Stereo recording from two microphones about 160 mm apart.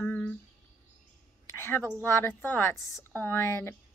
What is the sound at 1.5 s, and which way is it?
A woman's voice, 15° left (ahead or behind).